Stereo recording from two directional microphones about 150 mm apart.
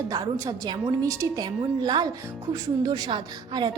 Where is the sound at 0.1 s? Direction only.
25° right (ahead or behind).